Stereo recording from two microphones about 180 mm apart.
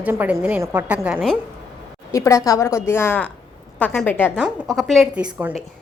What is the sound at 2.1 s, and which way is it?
A woman's voice, 15° left (ahead or behind).